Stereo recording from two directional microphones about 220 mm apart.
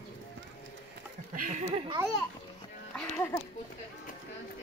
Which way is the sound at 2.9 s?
10° left (ahead or behind).